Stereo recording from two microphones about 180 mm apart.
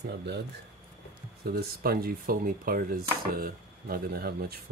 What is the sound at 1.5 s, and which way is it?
Speech, 55° right (ahead or behind).